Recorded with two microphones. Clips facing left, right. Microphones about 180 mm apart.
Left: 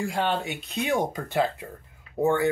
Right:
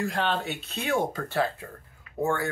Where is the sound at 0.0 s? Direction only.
10° left (ahead or behind).